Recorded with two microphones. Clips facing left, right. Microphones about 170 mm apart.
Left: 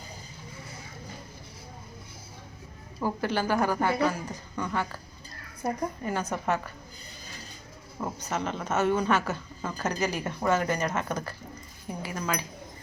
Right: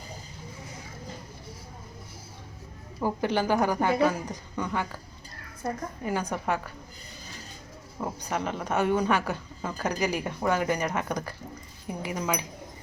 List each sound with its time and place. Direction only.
3.0 s a woman's voice: 15° right (ahead or behind)
6.0 s a woman's voice: 10° right (ahead or behind)
8.0 s a woman's voice: 10° right (ahead or behind)